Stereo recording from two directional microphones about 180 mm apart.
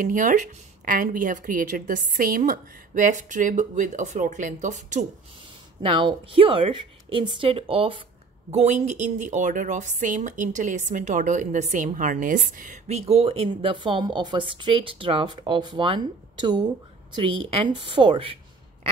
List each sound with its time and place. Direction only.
0.0 s a woman's voice: 45° right (ahead or behind)
5.8 s a woman's voice: 30° right (ahead or behind)